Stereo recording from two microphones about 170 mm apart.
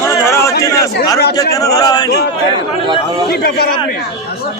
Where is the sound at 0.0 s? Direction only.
15° left (ahead or behind).